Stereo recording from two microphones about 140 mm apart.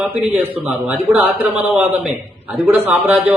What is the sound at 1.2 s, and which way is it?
A man's voice, 10° right (ahead or behind).